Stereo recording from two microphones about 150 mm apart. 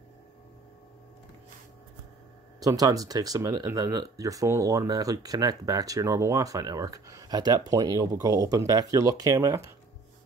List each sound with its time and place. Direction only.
2.6 s speech: 25° right (ahead or behind)